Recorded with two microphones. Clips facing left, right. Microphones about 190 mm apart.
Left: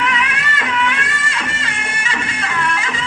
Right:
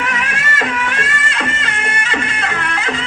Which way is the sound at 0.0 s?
45° right (ahead or behind).